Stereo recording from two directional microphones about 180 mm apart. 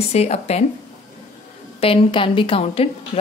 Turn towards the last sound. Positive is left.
turn(degrees=35)  # may be behind; listen again after turning